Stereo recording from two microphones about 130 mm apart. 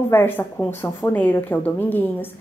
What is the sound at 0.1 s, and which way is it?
A woman's voice, 15° left (ahead or behind).